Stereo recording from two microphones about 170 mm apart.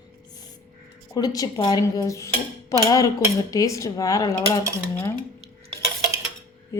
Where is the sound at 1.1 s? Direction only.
20° left (ahead or behind).